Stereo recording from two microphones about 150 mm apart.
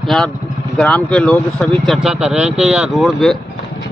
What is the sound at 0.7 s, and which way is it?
Speech, 5° left (ahead or behind).